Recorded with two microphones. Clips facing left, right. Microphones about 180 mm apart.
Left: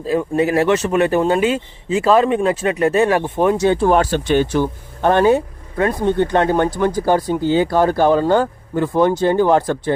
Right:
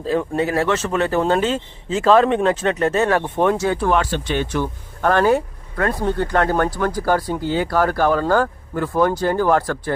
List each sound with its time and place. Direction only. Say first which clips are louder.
0.0 s speech: left 3 dB; 10° left (ahead or behind)
3.6 s speech: left 5 dB; 25° left (ahead or behind)
3.9 s speech: left 5 dB; 45° left (ahead or behind)
4.5 s speech: left 5 dB; 25° left (ahead or behind)